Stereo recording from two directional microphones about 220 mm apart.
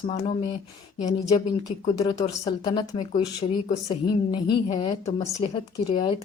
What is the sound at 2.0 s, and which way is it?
Speech, 15° left (ahead or behind).